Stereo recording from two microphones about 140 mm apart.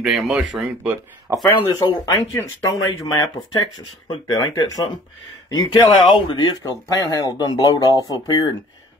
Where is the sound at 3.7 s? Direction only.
25° left (ahead or behind).